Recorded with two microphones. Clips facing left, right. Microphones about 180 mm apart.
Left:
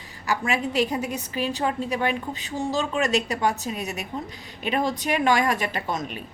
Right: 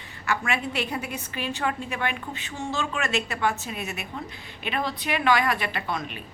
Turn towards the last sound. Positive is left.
turn(degrees=40)  # may be behind; listen again after turning